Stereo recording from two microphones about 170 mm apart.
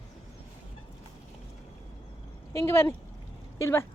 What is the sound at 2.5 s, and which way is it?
Speech, 15° left (ahead or behind).